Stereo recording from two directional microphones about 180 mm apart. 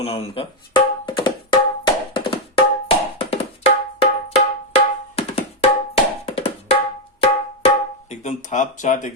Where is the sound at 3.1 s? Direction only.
35° left (ahead or behind).